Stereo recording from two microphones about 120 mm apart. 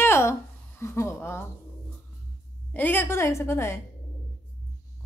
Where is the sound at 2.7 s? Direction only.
15° left (ahead or behind).